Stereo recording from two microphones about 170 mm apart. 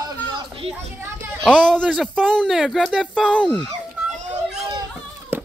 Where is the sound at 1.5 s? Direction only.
5° left (ahead or behind).